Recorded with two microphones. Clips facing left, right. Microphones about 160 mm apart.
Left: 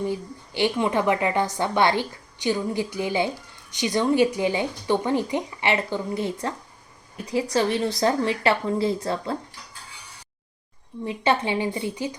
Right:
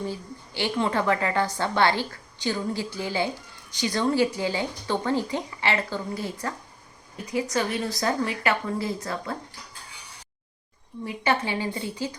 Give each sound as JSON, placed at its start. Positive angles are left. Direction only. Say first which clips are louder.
{"t": 0.1, "sound": "a woman's voice", "louder": "left 5 dB", "side_deg": 20}
{"t": 11.0, "sound": "speech", "louder": "left 3 dB", "side_deg": 25}